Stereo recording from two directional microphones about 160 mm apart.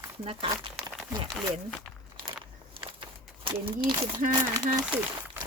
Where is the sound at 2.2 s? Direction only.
30° right (ahead or behind).